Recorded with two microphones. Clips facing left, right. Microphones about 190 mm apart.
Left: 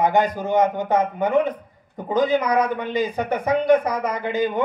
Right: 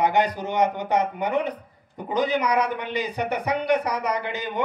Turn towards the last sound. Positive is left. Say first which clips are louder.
# left 5 dB
turn(degrees=50)  # may be behind; listen again after turning